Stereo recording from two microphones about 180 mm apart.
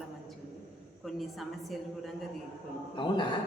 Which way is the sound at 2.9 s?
25° left (ahead or behind).